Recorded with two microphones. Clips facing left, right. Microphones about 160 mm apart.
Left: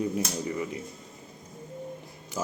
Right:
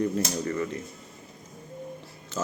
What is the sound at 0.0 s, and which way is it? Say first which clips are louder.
Speech: right 2 dB; 10° left (ahead or behind).